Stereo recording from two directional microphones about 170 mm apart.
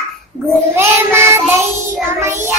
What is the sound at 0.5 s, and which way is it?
A child's voice, 15° right (ahead or behind).